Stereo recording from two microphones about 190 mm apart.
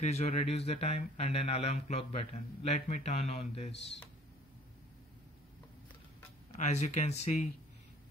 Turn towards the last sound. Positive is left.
turn(degrees=35)  # may be behind; listen again after turning